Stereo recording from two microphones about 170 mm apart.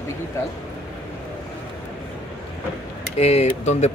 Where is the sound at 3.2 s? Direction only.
40° left (ahead or behind).